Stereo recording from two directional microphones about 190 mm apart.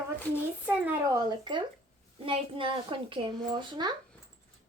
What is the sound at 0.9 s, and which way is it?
A woman's voice, 20° right (ahead or behind).